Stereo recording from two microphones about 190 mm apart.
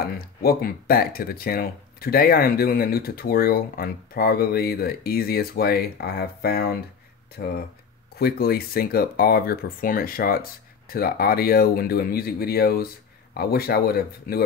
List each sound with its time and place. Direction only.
0.0 s speech: 50° left (ahead or behind)